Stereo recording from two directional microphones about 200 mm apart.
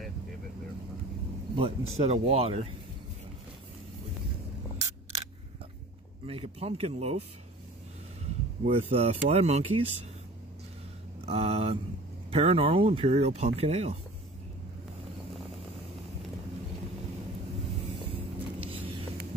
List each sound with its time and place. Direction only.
1.5 s speech: 30° right (ahead or behind)
6.2 s speech: 30° right (ahead or behind)
8.6 s speech: 30° right (ahead or behind)
11.1 s speech: 30° right (ahead or behind)
18.0 s vehicle: 30° right (ahead or behind)